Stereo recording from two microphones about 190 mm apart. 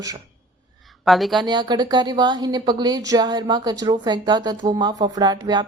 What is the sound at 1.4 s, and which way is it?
Speech, 20° right (ahead or behind).